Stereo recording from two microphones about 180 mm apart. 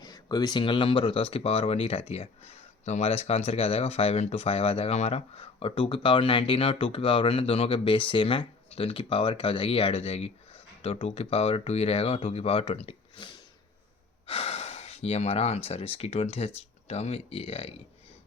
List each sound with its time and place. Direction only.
0.0 s speech: 20° left (ahead or behind)